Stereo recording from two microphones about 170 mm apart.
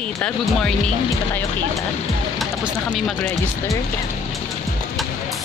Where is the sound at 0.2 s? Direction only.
5° left (ahead or behind).